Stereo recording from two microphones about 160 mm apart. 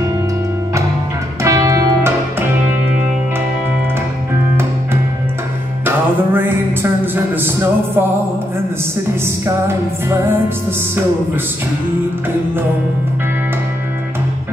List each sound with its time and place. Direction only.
1.4 s music: 20° right (ahead or behind)
5.9 s music: 10° right (ahead or behind)
7.3 s speech: 15° right (ahead or behind)